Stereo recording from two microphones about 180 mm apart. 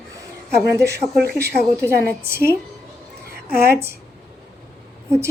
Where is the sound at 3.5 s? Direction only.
60° right (ahead or behind).